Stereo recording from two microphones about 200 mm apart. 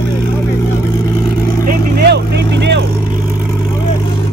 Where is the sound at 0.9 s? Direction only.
15° left (ahead or behind).